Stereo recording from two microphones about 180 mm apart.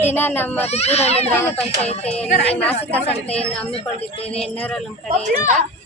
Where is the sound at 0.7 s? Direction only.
35° left (ahead or behind).